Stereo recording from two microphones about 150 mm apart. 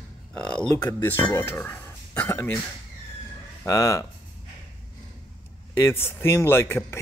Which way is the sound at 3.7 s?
20° left (ahead or behind).